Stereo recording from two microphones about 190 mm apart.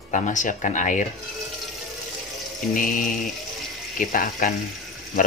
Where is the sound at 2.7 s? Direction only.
45° left (ahead or behind).